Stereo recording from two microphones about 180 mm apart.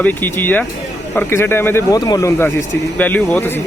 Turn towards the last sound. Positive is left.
turn(degrees=10)  # may be behind; listen again after turning